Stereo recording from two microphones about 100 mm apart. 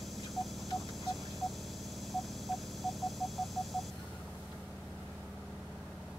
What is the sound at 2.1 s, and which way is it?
Radio, centre (ahead or behind).